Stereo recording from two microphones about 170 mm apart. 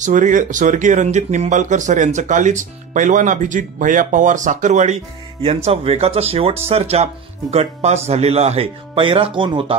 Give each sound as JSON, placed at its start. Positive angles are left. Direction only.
{"t": 0.0, "sound": "speech", "side_deg": -45}